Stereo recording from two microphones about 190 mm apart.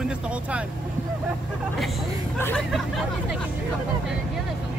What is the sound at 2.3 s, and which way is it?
Speech, 10° left (ahead or behind).